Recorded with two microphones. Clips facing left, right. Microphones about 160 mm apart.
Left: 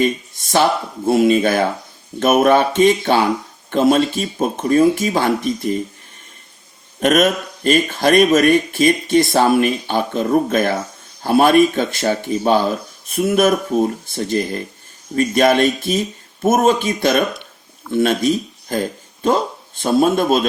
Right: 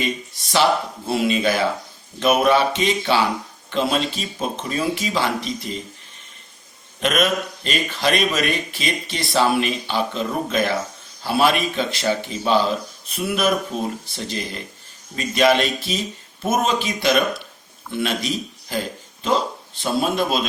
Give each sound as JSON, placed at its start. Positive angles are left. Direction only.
{"t": 0.0, "sound": "speech", "side_deg": 50}
{"t": 7.0, "sound": "speech", "side_deg": 45}